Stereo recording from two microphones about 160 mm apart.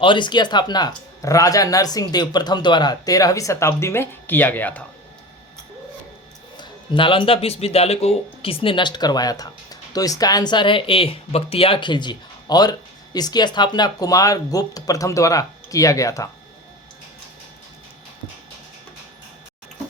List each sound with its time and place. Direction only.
0.0 s speech: 30° left (ahead or behind); by 4.8 s 10° left (ahead or behind)
6.6 s speech: 30° left (ahead or behind)